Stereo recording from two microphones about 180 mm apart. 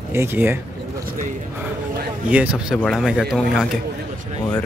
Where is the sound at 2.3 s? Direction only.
10° right (ahead or behind).